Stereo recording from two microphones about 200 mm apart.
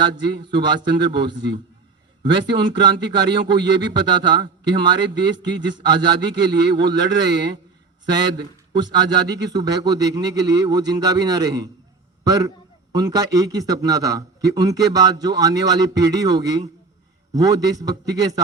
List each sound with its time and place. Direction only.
0.2 s speech: 20° right (ahead or behind)
8.1 s a man's voice: 20° right (ahead or behind)